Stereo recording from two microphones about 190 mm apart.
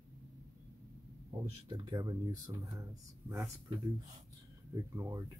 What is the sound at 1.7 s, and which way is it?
Speech, 20° right (ahead or behind).